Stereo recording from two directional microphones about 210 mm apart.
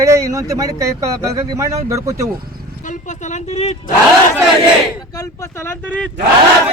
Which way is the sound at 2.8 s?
35° left (ahead or behind).